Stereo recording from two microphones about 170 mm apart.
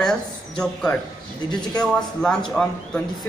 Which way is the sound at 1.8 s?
5° left (ahead or behind).